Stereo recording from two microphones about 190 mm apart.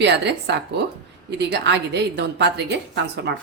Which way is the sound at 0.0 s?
65° right (ahead or behind).